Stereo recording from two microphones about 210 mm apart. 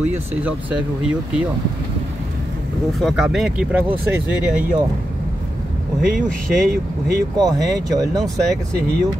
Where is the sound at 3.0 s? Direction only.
Centre (ahead or behind).